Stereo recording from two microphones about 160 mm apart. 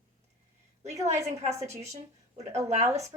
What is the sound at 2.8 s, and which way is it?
Speech, 20° right (ahead or behind).